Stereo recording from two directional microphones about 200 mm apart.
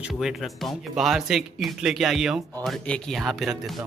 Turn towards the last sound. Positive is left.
turn(degrees=0)  # may be behind; listen again after turning